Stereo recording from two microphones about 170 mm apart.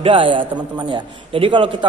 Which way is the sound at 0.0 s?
30° right (ahead or behind).